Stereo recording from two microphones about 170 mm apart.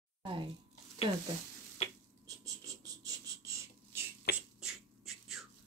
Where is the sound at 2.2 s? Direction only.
20° right (ahead or behind).